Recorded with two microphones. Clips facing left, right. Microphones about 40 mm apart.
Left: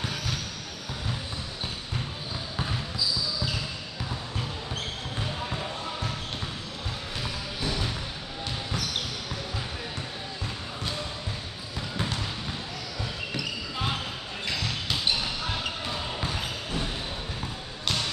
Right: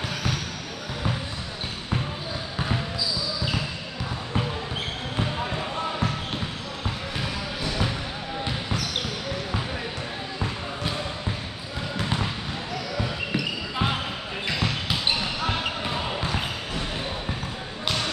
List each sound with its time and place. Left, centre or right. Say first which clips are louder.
5.2 s basketball bounce: right 5 dB; right
12.9 s basketball bounce: right 6 dB; right
17.8 s basketball bounce: right 2 dB; centre